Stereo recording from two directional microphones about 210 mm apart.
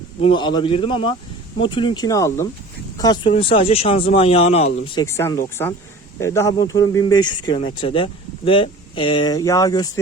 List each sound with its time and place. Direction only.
0.2 s speech: 25° left (ahead or behind)
5.0 s speech: 15° left (ahead or behind)